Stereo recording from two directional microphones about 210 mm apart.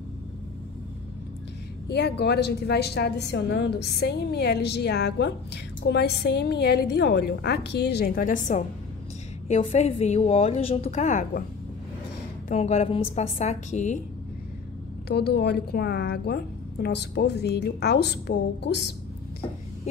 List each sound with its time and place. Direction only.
1.9 s a woman's voice: 50° left (ahead or behind); by 11.4 s 35° left (ahead or behind)
12.4 s a woman's voice: 30° left (ahead or behind)
15.0 s a woman's voice: 50° left (ahead or behind)